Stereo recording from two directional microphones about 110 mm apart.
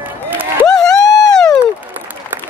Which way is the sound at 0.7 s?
5° left (ahead or behind).